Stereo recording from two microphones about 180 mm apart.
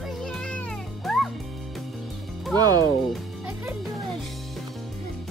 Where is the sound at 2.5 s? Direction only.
20° right (ahead or behind).